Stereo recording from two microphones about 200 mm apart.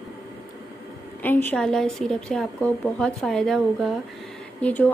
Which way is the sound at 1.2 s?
10° left (ahead or behind).